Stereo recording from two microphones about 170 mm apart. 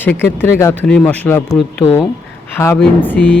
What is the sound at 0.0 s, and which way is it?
Speech, 10° left (ahead or behind).